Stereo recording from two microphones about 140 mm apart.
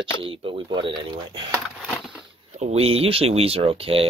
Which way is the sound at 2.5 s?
50° right (ahead or behind).